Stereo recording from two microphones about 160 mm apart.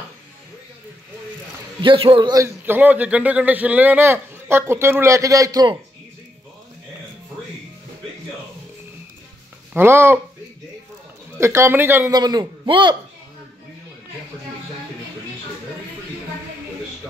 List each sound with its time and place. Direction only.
1.8 s a man's voice: 30° right (ahead or behind)
2.4 s a man's voice: 10° right (ahead or behind)
9.8 s a man's voice: 15° right (ahead or behind)
11.3 s a man's voice: 15° right (ahead or behind)
12.1 s a man's voice: 25° right (ahead or behind)